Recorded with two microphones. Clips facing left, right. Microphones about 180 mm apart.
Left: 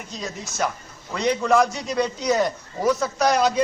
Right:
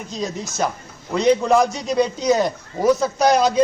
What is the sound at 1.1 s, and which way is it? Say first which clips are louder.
A man's voice: right 4 dB; 20° right (ahead or behind).